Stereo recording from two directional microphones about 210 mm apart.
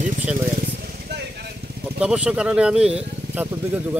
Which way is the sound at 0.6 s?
50° right (ahead or behind).